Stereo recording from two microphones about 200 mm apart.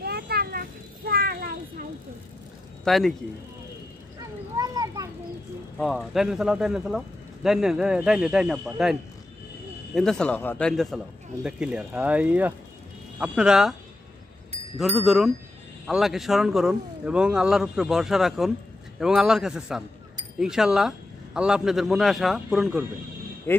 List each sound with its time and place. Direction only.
0.0 s a sound: 50° right (ahead or behind)
2.8 s speech: centre (ahead or behind)
4.6 s children playing: 20° right (ahead or behind)
5.8 s speech: centre (ahead or behind)
9.9 s speech: 5° left (ahead or behind)
15.0 s speech: centre (ahead or behind)